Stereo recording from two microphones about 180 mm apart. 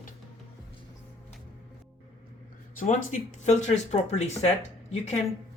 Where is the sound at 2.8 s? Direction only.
45° left (ahead or behind).